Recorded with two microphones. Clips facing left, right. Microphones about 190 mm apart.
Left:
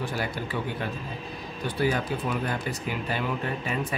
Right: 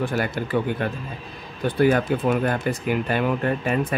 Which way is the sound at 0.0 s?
55° right (ahead or behind).